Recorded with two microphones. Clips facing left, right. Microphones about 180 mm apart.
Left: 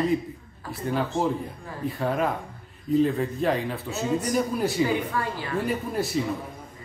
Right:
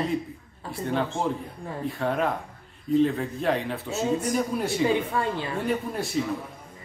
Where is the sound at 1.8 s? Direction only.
Centre (ahead or behind).